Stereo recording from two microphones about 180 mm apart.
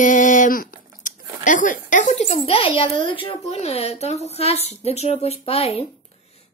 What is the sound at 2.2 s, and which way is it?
A child's voice, 35° left (ahead or behind).